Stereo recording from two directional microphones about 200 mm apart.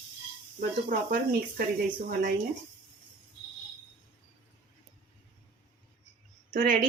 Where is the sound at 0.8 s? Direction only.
45° right (ahead or behind).